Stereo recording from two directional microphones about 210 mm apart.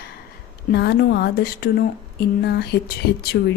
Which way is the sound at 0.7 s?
50° left (ahead or behind).